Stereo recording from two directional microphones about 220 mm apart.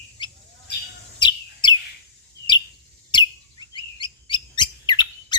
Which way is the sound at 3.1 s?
20° left (ahead or behind).